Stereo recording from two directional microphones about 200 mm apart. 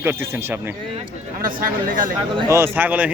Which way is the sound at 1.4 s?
45° right (ahead or behind).